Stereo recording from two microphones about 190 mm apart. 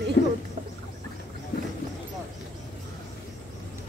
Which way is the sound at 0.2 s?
60° left (ahead or behind).